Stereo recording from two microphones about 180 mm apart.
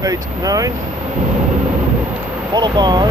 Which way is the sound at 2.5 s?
25° right (ahead or behind).